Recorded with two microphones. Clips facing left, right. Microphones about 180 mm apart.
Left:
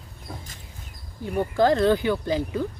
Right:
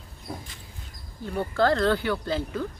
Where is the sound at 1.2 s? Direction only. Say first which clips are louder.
Left 3 dB; 15° left (ahead or behind).